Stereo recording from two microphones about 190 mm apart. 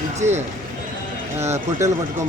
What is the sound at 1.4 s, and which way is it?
Speech, 15° right (ahead or behind).